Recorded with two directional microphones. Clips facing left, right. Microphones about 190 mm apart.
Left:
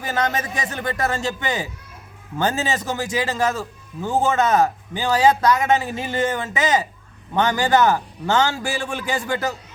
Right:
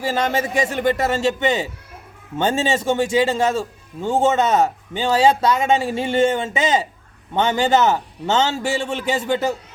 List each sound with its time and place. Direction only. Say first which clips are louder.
0.0 s a man's voice: right 3 dB; 25° right (ahead or behind)